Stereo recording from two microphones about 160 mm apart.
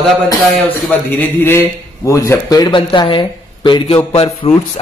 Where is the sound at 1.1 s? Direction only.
10° left (ahead or behind).